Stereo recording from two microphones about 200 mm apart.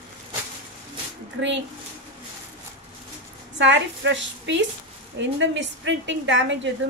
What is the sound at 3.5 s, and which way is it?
A woman's voice, 65° right (ahead or behind).